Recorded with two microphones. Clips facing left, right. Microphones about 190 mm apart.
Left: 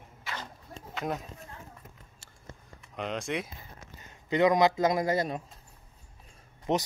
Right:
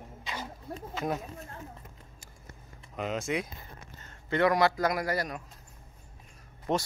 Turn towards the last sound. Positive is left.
turn(degrees=20)  # may be behind; listen again after turning